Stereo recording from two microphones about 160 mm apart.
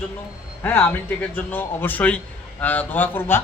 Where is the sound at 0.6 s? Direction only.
15° left (ahead or behind).